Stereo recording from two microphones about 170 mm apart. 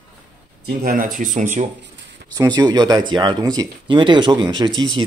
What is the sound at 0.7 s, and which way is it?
Speech, 60° right (ahead or behind).